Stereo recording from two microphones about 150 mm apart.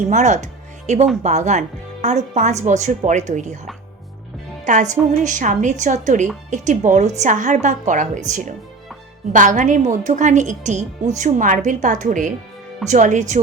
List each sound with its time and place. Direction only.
0.1 s a woman's voice: 55° right (ahead or behind)
4.6 s a woman's voice: 55° right (ahead or behind)